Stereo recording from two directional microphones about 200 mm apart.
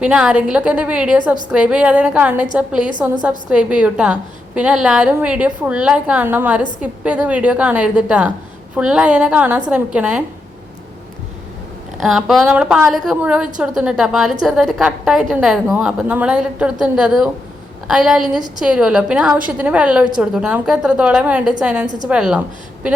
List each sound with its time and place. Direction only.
0.0 s a woman's voice: 5° right (ahead or behind)
11.9 s a woman's voice: centre (ahead or behind)